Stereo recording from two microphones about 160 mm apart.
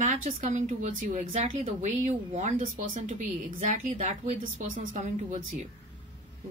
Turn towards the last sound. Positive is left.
turn(degrees=-45)  # may be behind; listen again after turning